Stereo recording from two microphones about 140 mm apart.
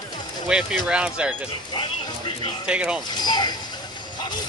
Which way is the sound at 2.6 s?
10° right (ahead or behind).